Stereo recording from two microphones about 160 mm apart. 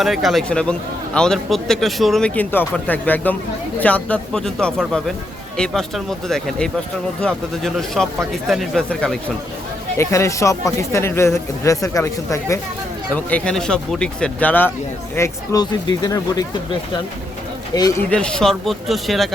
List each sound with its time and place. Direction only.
0.0 s a man's voice: centre (ahead or behind)
10.0 s speech: 20° left (ahead or behind)
13.1 s speech: 10° left (ahead or behind)
17.7 s speech: 25° left (ahead or behind)
18.1 s a man's voice: 5° left (ahead or behind)